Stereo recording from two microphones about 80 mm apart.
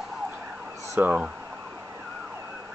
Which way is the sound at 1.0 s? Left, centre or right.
Centre.